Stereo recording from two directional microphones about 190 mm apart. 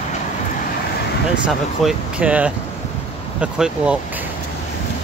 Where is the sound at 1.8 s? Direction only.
5° right (ahead or behind).